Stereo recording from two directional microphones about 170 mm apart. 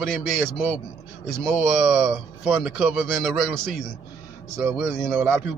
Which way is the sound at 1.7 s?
Centre (ahead or behind).